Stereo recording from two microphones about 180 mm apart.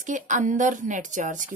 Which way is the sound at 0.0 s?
45° right (ahead or behind).